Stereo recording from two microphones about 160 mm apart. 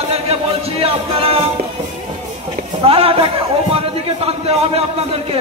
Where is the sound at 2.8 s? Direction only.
35° right (ahead or behind).